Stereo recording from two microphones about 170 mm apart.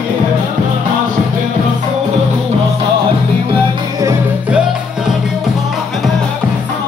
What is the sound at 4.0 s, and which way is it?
Music, 15° right (ahead or behind).